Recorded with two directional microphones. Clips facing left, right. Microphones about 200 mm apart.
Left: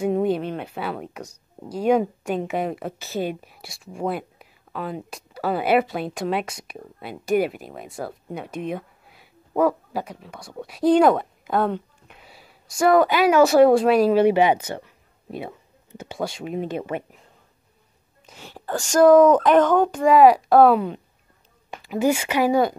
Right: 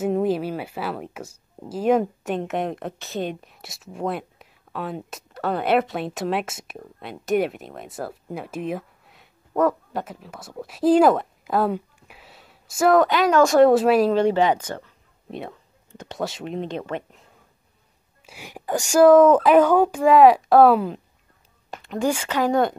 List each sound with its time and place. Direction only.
0.0 s speech: centre (ahead or behind)
18.2 s speech: 10° right (ahead or behind)